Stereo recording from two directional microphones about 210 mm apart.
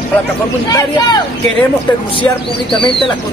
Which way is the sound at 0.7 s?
20° left (ahead or behind).